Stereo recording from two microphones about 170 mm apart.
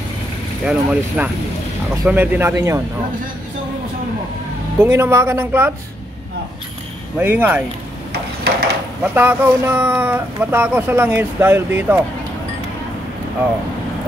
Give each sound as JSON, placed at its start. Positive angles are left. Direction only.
{"t": 0.7, "sound": "speech", "side_deg": -5}
{"t": 4.7, "sound": "speech", "side_deg": -15}
{"t": 7.2, "sound": "speech", "side_deg": -10}
{"t": 9.0, "sound": "speech", "side_deg": -10}